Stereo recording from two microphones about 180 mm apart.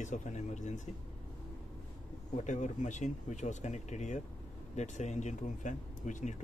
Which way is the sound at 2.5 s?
40° left (ahead or behind).